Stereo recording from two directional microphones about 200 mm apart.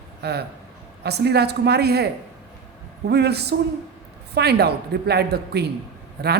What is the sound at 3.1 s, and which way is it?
A woman's voice, 55° right (ahead or behind).